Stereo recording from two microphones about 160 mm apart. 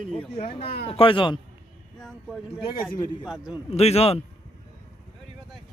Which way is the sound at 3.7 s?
40° left (ahead or behind).